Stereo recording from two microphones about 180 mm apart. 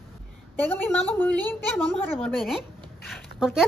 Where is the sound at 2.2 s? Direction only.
Centre (ahead or behind).